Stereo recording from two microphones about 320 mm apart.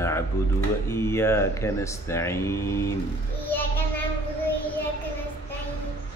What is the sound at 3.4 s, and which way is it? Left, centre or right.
Child singing, centre.